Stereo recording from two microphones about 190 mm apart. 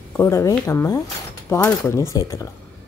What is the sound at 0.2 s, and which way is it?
Speech, 15° left (ahead or behind).